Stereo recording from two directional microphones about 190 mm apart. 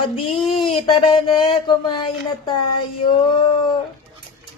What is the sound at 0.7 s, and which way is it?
A woman's voice, 30° left (ahead or behind).